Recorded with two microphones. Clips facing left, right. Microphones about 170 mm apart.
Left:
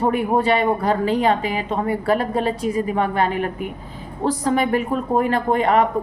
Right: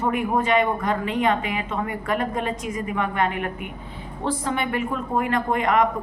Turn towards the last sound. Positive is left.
turn(degrees=35)  # may be behind; listen again after turning